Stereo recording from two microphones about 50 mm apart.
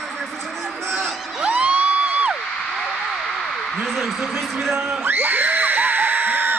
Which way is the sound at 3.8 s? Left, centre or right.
Centre.